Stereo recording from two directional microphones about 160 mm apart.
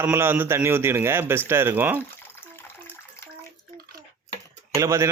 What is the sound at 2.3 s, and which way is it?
Water, 15° left (ahead or behind).